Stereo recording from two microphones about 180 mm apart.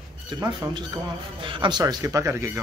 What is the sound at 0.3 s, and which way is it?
Speech, 25° right (ahead or behind).